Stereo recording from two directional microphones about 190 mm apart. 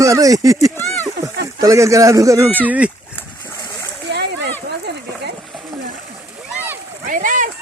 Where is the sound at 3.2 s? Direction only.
15° left (ahead or behind).